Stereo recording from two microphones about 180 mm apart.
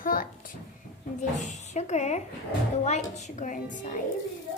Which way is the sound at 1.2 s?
40° left (ahead or behind).